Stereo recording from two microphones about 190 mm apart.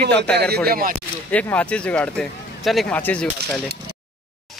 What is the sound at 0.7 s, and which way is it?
Speech, 50° right (ahead or behind).